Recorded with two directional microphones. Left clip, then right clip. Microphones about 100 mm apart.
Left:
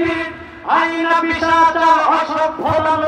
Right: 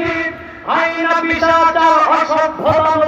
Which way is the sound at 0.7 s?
20° left (ahead or behind).